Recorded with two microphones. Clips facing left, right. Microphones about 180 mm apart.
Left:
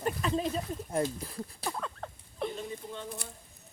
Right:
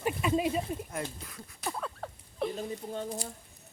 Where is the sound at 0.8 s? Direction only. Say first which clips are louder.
Left 7 dB; 30° left (ahead or behind).